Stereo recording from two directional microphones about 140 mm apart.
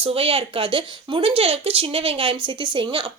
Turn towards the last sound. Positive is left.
turn(degrees=-35)  # may be behind; listen again after turning